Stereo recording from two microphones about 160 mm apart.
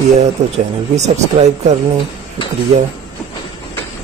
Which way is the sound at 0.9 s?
45° right (ahead or behind).